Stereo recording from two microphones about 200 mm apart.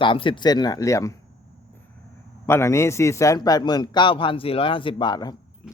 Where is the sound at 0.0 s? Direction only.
25° left (ahead or behind).